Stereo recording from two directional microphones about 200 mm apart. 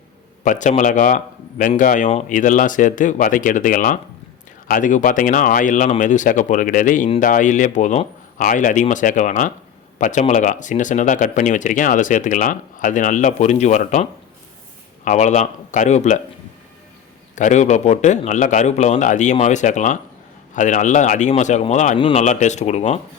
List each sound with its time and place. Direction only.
0.4 s speech: 40° left (ahead or behind)
17.3 s speech: 35° left (ahead or behind)